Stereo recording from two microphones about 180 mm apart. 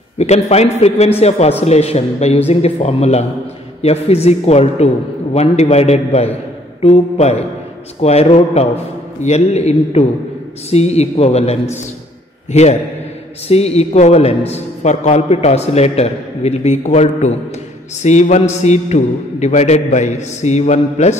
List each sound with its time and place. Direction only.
0.2 s a man's voice: 35° left (ahead or behind)
13.5 s a man's voice: 35° left (ahead or behind)